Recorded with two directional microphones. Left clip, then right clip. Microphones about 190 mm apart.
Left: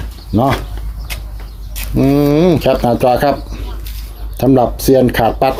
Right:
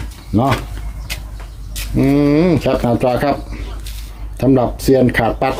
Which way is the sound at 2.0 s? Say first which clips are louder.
Left 2 dB; 20° left (ahead or behind).